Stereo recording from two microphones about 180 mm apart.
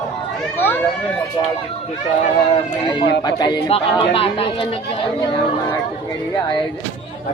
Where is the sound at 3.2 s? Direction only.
25° left (ahead or behind).